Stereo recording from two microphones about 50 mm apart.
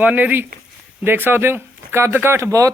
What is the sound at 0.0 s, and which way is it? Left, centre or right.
A man's voice, right.